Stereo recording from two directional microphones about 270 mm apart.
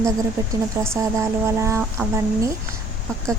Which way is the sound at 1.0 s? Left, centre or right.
Centre.